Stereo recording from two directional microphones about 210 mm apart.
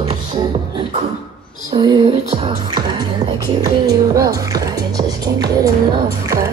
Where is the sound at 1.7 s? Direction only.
20° right (ahead or behind).